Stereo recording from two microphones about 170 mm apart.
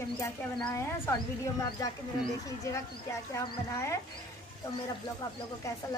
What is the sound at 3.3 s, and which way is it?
Speech, 20° left (ahead or behind).